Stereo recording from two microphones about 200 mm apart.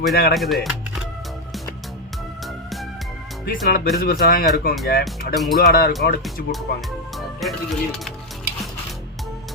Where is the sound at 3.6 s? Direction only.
50° left (ahead or behind).